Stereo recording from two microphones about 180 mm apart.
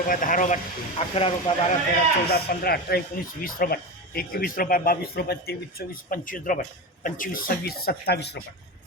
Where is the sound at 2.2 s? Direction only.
60° left (ahead or behind).